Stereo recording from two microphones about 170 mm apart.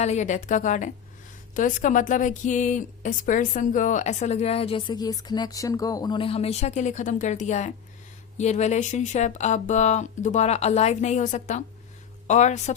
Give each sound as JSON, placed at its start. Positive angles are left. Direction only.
{"t": 0.0, "sound": "speech", "side_deg": 45}